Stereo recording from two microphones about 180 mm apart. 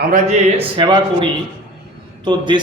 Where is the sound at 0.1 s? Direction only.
40° right (ahead or behind).